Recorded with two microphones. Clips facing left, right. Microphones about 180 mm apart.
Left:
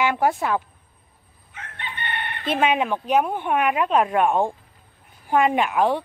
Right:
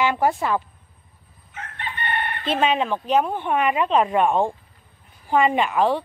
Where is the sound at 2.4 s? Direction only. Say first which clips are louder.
Left 1 dB; 10° left (ahead or behind).